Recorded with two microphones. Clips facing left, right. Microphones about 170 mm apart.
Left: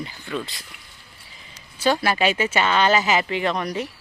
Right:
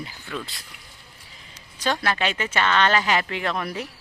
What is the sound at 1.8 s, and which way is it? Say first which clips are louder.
Speech: left 4 dB; 5° left (ahead or behind).